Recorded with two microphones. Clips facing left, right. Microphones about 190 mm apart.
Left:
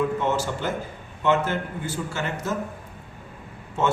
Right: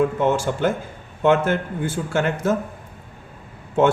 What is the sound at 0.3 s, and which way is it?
A man's voice, 55° right (ahead or behind).